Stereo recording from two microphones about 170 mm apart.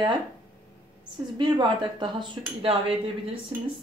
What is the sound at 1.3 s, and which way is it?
Speech, 25° right (ahead or behind).